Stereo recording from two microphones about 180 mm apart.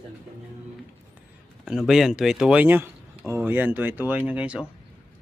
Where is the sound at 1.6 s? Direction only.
5° right (ahead or behind).